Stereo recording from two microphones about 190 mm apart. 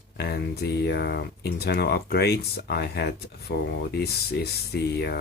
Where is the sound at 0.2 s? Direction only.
60° left (ahead or behind).